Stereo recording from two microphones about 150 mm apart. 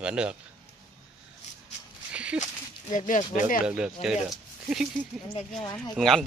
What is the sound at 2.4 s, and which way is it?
Speech, 55° left (ahead or behind).